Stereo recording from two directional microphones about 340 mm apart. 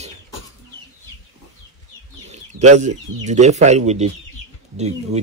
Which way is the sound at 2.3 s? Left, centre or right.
Centre.